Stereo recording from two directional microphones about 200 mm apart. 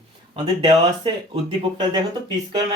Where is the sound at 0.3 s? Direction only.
20° right (ahead or behind).